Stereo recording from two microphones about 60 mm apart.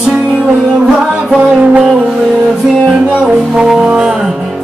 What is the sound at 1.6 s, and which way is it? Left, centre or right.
Music, right.